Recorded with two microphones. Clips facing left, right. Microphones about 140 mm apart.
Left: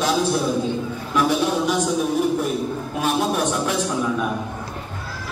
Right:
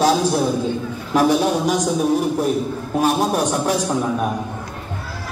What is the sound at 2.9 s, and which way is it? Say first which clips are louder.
Speech: right 4 dB; 40° right (ahead or behind).